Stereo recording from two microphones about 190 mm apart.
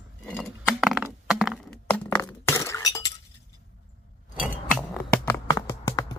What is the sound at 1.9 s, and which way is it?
Glass, 10° left (ahead or behind).